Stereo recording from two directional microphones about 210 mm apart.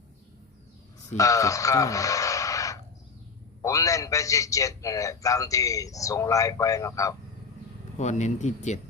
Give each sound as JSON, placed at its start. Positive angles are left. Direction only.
{"t": 1.1, "sound": "a man's voice", "side_deg": 15}
{"t": 7.9, "sound": "speech", "side_deg": 35}